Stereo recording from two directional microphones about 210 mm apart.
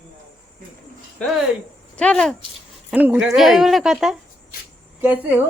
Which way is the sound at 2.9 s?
5° right (ahead or behind).